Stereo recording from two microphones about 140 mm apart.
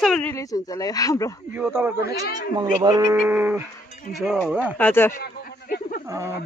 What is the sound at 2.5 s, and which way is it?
Speech, 30° right (ahead or behind).